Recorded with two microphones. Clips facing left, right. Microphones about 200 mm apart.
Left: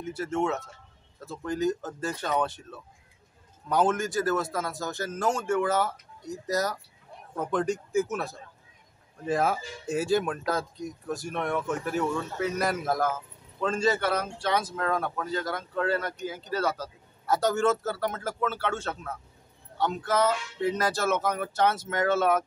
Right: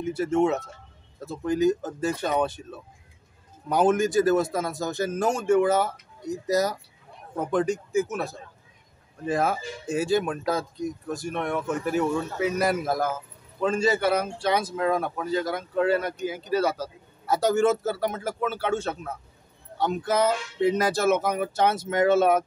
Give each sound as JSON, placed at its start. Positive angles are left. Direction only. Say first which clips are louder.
{"t": 0.1, "sound": "speech", "louder": "right 6 dB", "side_deg": -15}